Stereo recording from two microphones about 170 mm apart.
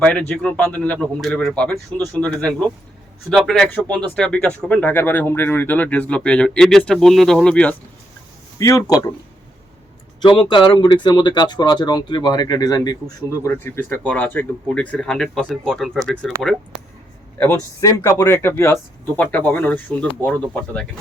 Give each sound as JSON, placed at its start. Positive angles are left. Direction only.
{"t": 0.0, "sound": "speech", "side_deg": 5}
{"t": 8.5, "sound": "speech", "side_deg": 20}
{"t": 10.2, "sound": "speech", "side_deg": 30}
{"t": 17.4, "sound": "speech", "side_deg": 15}